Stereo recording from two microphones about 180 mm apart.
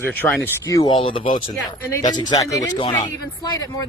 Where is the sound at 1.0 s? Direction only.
30° left (ahead or behind).